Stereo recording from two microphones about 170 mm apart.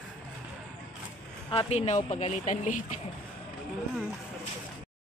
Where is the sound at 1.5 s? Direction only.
40° left (ahead or behind).